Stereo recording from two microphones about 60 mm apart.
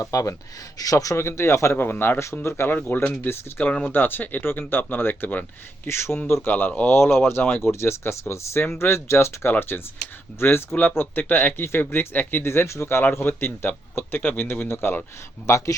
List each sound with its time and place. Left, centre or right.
0.0 s speech: left
0.8 s speech: left
1.1 s speech: left
2.4 s speech: left
3.6 s speech: centre
3.8 s a man's voice: left
5.9 s speech: left
6.4 s speech: left
6.9 s a man's voice: left
15.4 s speech: left